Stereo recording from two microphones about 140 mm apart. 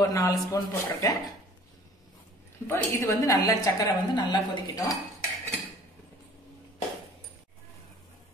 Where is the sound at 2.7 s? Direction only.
20° left (ahead or behind).